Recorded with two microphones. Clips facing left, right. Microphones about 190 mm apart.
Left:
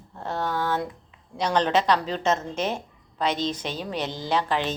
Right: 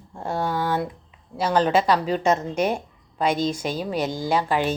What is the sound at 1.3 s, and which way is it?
Speech, 5° right (ahead or behind).